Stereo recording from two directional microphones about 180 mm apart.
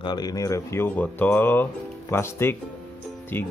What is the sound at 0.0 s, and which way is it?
Speech, 25° left (ahead or behind).